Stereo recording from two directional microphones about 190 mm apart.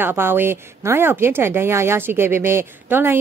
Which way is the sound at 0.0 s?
10° right (ahead or behind).